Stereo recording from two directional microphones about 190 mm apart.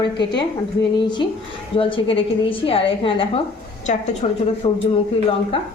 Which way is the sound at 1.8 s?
30° left (ahead or behind).